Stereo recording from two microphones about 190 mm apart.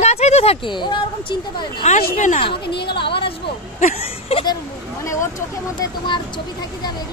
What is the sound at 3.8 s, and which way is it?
Speech, 40° left (ahead or behind).